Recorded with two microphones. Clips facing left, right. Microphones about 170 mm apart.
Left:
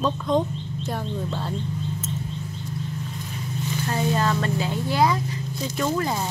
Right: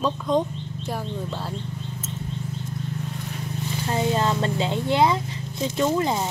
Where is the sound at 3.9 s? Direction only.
20° right (ahead or behind).